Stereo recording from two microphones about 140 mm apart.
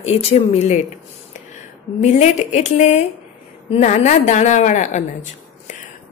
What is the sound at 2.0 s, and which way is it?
A woman's voice, 55° left (ahead or behind).